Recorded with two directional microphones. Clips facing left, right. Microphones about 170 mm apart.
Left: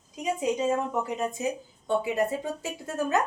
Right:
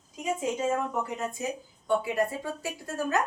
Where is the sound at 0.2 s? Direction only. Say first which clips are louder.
Left 2 dB; 20° left (ahead or behind).